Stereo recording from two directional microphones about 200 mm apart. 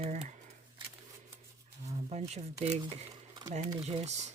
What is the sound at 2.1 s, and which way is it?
Speech, 35° right (ahead or behind).